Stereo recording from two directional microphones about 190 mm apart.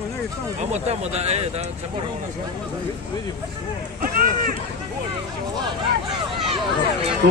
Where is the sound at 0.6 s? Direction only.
35° right (ahead or behind).